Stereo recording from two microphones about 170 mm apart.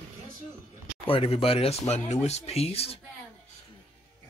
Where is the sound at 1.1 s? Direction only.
35° left (ahead or behind).